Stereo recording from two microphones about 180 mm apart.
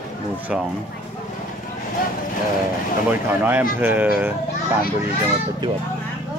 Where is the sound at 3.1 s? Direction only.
10° right (ahead or behind).